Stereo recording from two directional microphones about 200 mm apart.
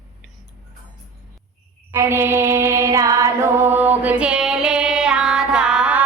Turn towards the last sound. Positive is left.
turn(degrees=-5)  # may be behind; listen again after turning